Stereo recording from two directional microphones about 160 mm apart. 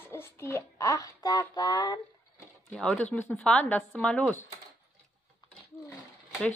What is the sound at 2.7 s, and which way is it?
Speech, 5° left (ahead or behind).